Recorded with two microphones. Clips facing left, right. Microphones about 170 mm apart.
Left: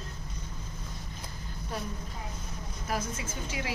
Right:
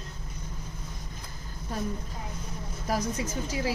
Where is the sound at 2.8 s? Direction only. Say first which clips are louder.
Right 5 dB; 40° right (ahead or behind).